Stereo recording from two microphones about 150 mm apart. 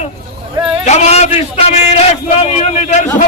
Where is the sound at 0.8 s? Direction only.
50° left (ahead or behind).